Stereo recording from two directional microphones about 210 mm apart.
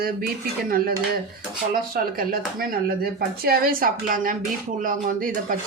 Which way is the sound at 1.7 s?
45° right (ahead or behind).